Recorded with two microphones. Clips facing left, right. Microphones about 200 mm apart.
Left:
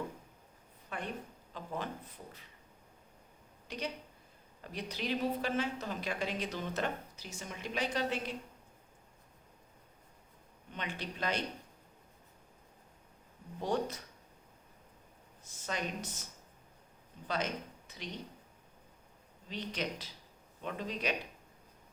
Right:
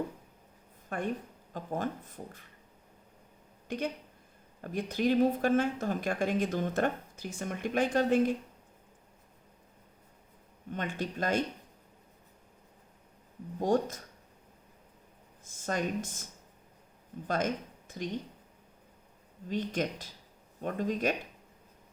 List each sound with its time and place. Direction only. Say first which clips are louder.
0.9 s a woman's voice: right 7 dB; 45° right (ahead or behind)
3.7 s a woman's voice: right 6 dB; 50° right (ahead or behind)
10.7 s a woman's voice: right 6 dB; 45° right (ahead or behind)
13.6 s a woman's voice: right 6 dB; 45° right (ahead or behind)
15.4 s a woman's voice: right 6 dB; 50° right (ahead or behind)
17.2 s speech: right 5 dB; 50° right (ahead or behind)
19.5 s a woman's voice: right 6 dB; 50° right (ahead or behind)